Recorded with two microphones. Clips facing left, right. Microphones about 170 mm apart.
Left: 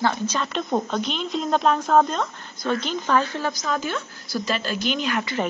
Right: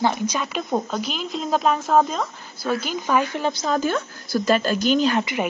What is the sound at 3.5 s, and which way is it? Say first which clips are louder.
Speech: right 3 dB; 30° right (ahead or behind).